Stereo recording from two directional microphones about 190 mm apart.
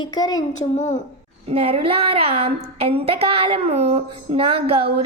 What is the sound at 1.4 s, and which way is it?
A woman's voice, 30° right (ahead or behind).